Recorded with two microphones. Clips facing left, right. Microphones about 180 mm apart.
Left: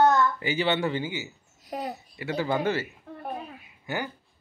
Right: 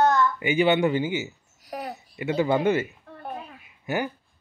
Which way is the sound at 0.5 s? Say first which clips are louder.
Right 5 dB; 15° right (ahead or behind).